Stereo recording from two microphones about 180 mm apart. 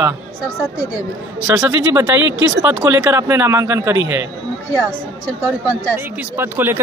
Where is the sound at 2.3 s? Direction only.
90° right.